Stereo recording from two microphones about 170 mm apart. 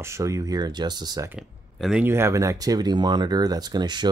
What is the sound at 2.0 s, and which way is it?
Speech, 15° right (ahead or behind).